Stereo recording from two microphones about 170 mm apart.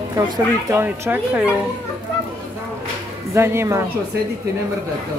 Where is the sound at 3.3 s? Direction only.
15° right (ahead or behind).